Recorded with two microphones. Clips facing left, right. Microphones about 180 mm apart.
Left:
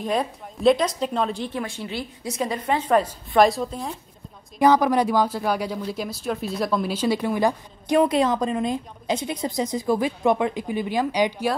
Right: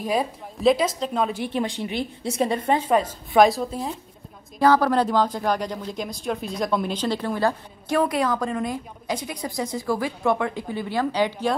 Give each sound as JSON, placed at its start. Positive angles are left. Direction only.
{"t": 0.0, "sound": "a woman's voice", "side_deg": -5}
{"t": 1.5, "sound": "speech", "side_deg": -20}
{"t": 2.9, "sound": "a woman's voice", "side_deg": 0}
{"t": 4.6, "sound": "speech", "side_deg": 15}